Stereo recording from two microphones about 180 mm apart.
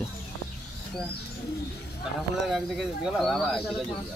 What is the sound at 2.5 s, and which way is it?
Speech, centre (ahead or behind).